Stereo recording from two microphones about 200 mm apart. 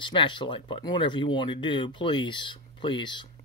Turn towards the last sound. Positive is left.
turn(degrees=25)  # may be behind; listen again after turning